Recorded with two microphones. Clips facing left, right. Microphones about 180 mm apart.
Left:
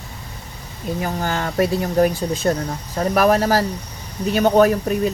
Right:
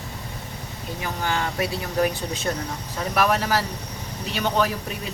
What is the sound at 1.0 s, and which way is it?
Speech, 45° left (ahead or behind).